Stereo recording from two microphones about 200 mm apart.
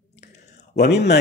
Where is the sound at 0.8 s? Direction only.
55° left (ahead or behind).